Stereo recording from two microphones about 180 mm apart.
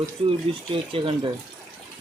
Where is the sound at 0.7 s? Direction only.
30° right (ahead or behind).